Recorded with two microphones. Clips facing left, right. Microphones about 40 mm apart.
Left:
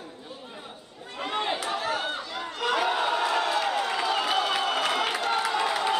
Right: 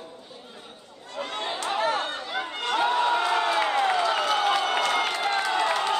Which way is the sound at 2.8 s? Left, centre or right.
Centre.